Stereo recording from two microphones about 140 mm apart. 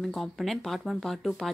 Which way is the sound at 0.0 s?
Centre (ahead or behind).